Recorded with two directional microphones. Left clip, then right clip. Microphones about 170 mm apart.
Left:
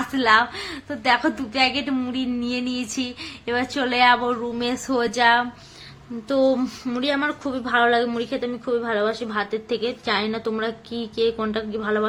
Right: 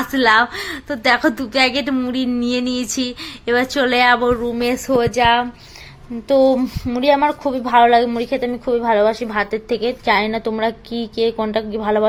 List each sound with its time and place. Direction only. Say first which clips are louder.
0.1 s a woman's voice: right 4 dB; 25° right (ahead or behind); by 7.6 s centre (ahead or behind)
7.6 s a woman's voice: right 7 dB; 10° right (ahead or behind)